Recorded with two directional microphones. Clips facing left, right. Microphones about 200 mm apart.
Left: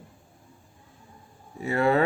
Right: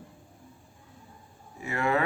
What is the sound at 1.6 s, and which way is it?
Mantra, 35° left (ahead or behind).